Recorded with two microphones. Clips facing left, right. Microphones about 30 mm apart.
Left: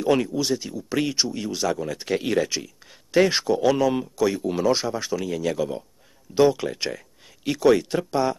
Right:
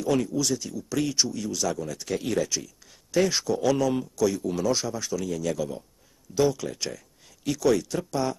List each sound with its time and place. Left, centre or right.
0.0 s speech: left